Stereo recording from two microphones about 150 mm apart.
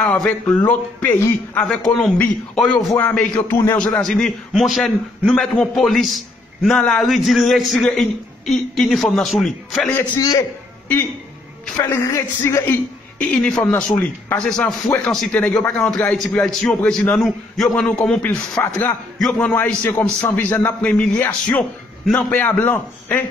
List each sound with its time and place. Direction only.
0.0 s a man's voice: 5° left (ahead or behind)
10.1 s a man's voice: 30° left (ahead or behind)
11.7 s a man's voice: 20° left (ahead or behind)